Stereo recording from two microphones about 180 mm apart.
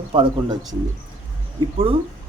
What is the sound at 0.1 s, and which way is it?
Speech, 25° right (ahead or behind).